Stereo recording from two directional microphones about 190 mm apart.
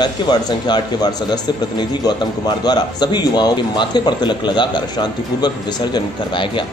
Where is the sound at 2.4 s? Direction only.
20° left (ahead or behind).